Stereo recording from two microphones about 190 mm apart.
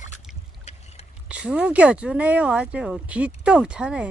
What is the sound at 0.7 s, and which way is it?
Boat, 35° left (ahead or behind).